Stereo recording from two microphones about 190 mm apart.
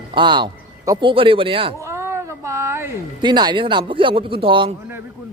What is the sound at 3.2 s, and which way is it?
Speech, 25° right (ahead or behind).